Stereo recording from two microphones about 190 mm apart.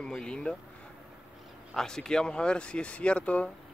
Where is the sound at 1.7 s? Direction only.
Centre (ahead or behind).